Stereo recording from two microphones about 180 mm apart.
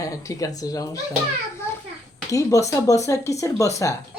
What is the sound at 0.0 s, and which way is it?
Speech, 20° left (ahead or behind).